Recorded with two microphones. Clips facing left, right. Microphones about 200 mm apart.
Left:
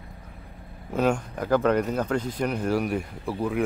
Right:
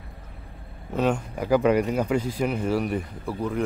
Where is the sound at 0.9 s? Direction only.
5° right (ahead or behind).